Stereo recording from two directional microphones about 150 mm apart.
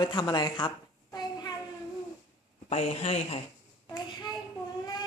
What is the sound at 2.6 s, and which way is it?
Speech, 45° left (ahead or behind).